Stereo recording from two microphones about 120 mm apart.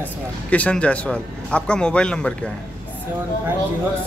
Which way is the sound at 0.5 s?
10° left (ahead or behind).